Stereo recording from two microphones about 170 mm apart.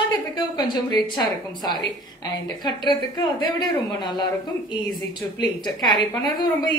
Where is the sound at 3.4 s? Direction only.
25° left (ahead or behind).